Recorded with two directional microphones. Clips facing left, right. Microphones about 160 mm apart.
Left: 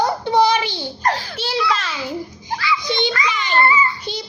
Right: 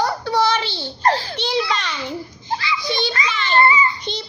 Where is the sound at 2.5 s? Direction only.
25° right (ahead or behind).